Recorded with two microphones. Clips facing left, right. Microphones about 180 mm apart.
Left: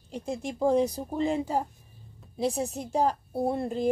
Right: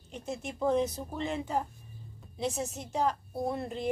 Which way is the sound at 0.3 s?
30° left (ahead or behind).